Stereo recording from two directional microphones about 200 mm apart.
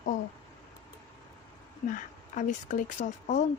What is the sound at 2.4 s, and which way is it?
Speech, 40° left (ahead or behind).